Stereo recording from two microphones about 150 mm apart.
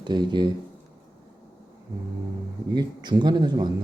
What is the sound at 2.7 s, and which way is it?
Speech, 30° right (ahead or behind).